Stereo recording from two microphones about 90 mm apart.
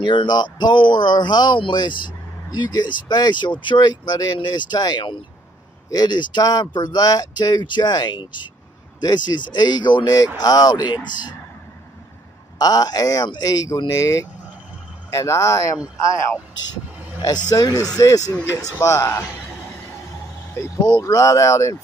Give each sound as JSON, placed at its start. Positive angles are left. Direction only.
{"t": 0.0, "sound": "speech", "side_deg": 65}
{"t": 10.0, "sound": "speech", "side_deg": 40}
{"t": 12.5, "sound": "speech", "side_deg": 45}
{"t": 17.3, "sound": "speech", "side_deg": 50}
{"t": 18.5, "sound": "a man's voice", "side_deg": -25}
{"t": 18.8, "sound": "speech", "side_deg": 35}
{"t": 20.6, "sound": "speech", "side_deg": 30}